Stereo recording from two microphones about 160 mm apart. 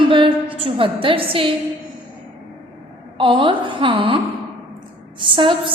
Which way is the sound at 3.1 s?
30° right (ahead or behind).